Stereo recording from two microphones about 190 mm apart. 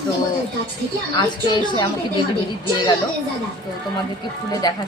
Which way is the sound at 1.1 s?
25° left (ahead or behind).